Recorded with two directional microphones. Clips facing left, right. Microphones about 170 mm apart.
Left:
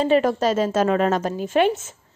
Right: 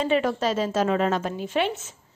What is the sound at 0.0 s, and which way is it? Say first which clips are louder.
A woman's voice: left 5 dB; 40° left (ahead or behind).